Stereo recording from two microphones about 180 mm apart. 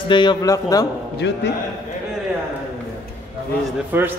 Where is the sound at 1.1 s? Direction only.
70° left (ahead or behind).